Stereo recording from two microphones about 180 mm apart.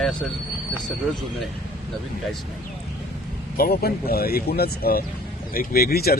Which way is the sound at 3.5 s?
55° left (ahead or behind).